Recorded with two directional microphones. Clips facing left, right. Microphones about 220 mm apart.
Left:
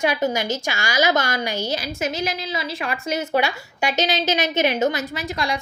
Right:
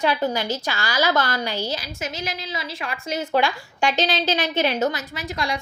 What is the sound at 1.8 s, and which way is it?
A woman's voice, 60° left (ahead or behind).